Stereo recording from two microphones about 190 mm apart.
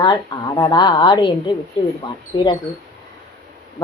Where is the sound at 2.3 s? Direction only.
25° left (ahead or behind).